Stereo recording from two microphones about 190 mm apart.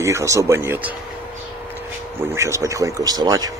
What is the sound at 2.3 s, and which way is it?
Speech, 15° right (ahead or behind).